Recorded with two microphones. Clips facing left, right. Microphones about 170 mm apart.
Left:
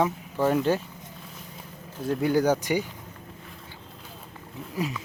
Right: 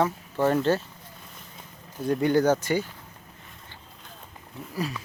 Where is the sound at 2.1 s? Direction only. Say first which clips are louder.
Right 1 dB; 5° left (ahead or behind).